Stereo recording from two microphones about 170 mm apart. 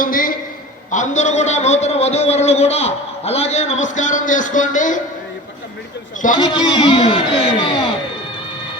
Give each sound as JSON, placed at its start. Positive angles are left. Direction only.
{"t": 0.0, "sound": "a sound", "side_deg": 55}
{"t": 0.9, "sound": "a man's voice", "side_deg": 45}
{"t": 6.4, "sound": "a man's voice", "side_deg": 25}
{"t": 7.6, "sound": "music", "side_deg": 25}